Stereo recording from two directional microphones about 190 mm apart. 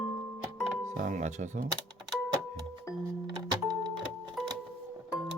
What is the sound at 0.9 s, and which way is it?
Speech, 45° right (ahead or behind).